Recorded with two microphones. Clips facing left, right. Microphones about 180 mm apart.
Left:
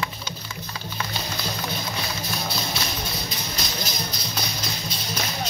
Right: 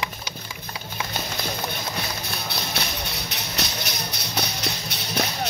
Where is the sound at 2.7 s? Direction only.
65° right (ahead or behind).